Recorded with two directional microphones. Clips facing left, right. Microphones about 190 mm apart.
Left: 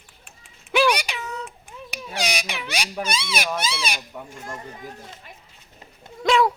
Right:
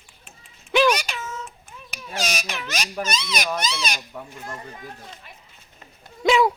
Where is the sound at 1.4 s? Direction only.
15° left (ahead or behind).